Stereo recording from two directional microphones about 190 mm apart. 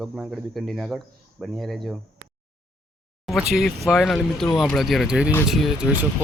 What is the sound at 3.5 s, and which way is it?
Speech, centre (ahead or behind).